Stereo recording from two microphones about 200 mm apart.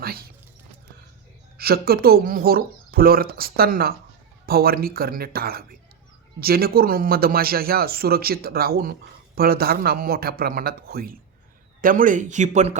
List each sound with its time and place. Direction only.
0.0 s clip-clop: 50° right (ahead or behind)
1.5 s speech: 50° right (ahead or behind)